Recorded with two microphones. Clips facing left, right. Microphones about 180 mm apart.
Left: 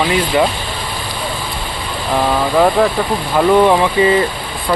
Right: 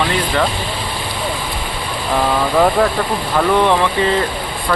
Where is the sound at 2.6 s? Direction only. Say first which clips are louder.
Left 2 dB; centre (ahead or behind).